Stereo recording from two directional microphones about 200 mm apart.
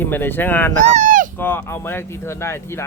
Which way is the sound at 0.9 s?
40° right (ahead or behind).